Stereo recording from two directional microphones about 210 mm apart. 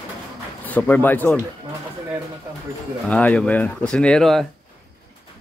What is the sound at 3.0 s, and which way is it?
Speech, 5° left (ahead or behind).